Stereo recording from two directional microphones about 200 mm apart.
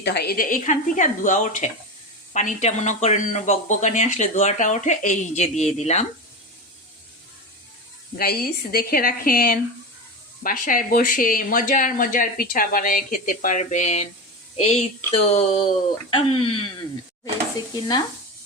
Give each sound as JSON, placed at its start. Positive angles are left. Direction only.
{"t": 0.0, "sound": "speech", "side_deg": 55}
{"t": 8.2, "sound": "speech", "side_deg": 50}